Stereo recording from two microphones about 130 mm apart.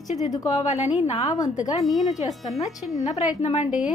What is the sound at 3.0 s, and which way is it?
Speech, 55° left (ahead or behind).